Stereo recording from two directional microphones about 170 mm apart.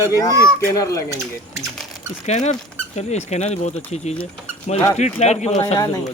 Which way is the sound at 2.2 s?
45° left (ahead or behind).